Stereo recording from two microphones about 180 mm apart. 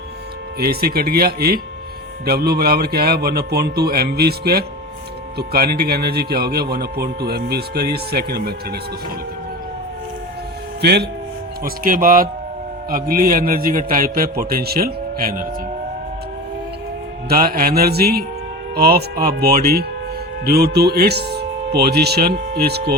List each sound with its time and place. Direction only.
0.6 s speech: 60° right (ahead or behind)
10.8 s speech: 65° right (ahead or behind)
11.6 s a man's voice: 50° right (ahead or behind)
17.2 s speech: 55° right (ahead or behind)